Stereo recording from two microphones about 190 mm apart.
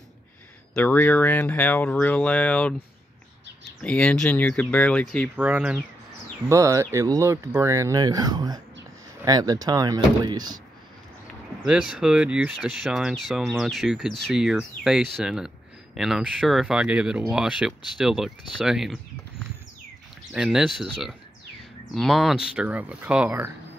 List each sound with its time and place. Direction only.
0.7 s speech: 10° left (ahead or behind)
3.8 s speech: 5° left (ahead or behind)
5.3 s speech: 10° right (ahead or behind)
11.6 s speech: 5° right (ahead or behind)
20.3 s speech: 5° right (ahead or behind)